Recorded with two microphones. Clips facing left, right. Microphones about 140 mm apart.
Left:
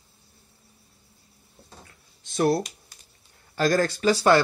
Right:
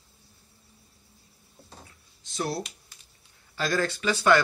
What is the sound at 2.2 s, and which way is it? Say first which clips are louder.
Speech: left 9 dB; 55° left (ahead or behind).